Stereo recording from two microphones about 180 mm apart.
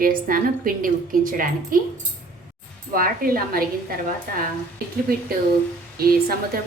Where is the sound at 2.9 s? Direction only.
55° right (ahead or behind).